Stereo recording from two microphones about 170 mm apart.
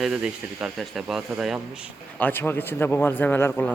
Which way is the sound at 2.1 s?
10° left (ahead or behind).